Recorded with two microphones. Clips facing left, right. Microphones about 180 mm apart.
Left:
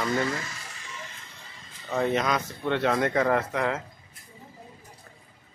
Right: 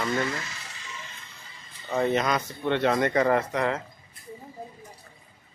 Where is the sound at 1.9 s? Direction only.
Centre (ahead or behind).